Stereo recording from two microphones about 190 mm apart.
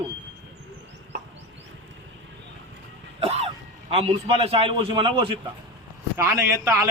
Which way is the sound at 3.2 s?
30° right (ahead or behind).